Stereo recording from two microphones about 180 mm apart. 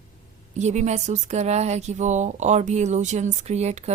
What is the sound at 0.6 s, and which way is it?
A woman's voice, 40° right (ahead or behind).